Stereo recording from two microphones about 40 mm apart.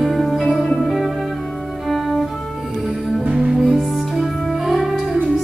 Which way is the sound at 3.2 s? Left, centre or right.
Right.